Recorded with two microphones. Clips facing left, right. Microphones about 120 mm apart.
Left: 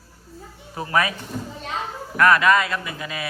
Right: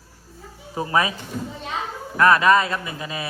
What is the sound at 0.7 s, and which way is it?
Speech, 25° right (ahead or behind).